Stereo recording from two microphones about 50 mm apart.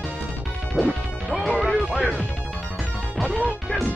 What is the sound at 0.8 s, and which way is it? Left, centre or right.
Music, centre.